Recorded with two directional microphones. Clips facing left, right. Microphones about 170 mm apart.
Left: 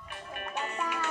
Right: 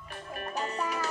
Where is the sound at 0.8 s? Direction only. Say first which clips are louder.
Right 1 dB; 35° right (ahead or behind).